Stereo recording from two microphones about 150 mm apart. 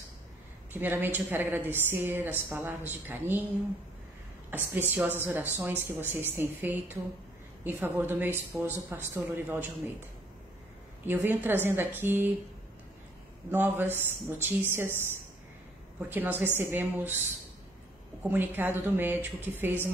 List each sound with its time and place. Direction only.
0.7 s speech: 15° right (ahead or behind)
4.5 s speech: 15° right (ahead or behind)
11.1 s speech: 15° right (ahead or behind)
13.5 s speech: 15° right (ahead or behind)
16.1 s speech: 15° right (ahead or behind)
18.3 s speech: 15° right (ahead or behind)